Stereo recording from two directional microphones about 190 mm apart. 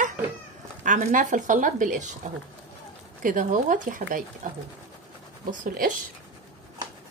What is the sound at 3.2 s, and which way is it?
A woman's voice, 45° right (ahead or behind).